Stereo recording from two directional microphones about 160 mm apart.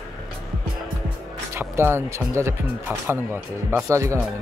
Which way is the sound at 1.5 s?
15° right (ahead or behind).